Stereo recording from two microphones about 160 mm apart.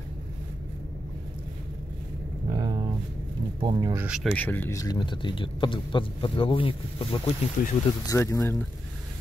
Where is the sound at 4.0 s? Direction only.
5° right (ahead or behind).